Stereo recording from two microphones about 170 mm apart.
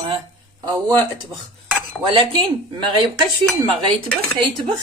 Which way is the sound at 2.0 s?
30° right (ahead or behind).